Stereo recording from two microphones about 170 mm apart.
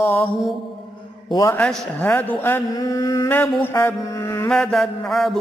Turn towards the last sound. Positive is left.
turn(degrees=0)  # may be behind; listen again after turning